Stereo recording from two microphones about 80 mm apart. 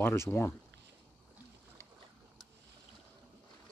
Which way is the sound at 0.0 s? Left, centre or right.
Left.